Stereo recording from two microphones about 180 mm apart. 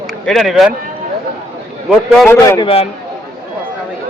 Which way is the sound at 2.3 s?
15° left (ahead or behind).